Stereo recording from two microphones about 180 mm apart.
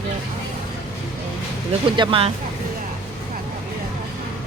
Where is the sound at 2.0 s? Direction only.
30° right (ahead or behind).